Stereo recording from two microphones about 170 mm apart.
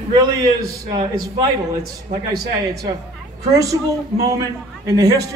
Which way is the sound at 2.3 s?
70° right (ahead or behind).